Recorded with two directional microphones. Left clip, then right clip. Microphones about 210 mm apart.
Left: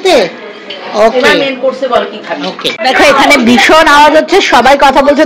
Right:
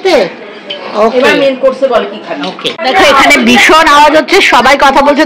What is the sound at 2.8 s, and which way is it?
A woman's voice, centre (ahead or behind).